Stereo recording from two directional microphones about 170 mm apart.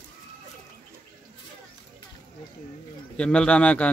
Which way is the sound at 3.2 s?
5° left (ahead or behind).